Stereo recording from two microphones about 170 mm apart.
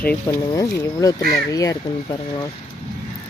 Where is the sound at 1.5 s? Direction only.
20° left (ahead or behind).